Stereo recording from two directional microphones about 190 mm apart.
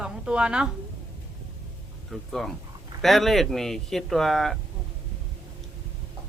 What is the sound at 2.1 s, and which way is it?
Speech, centre (ahead or behind).